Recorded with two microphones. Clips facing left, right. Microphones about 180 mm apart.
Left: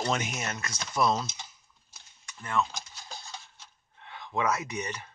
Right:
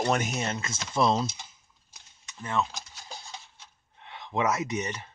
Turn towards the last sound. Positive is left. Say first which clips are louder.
# right 4 dB
turn(degrees=-20)  # may be behind; listen again after turning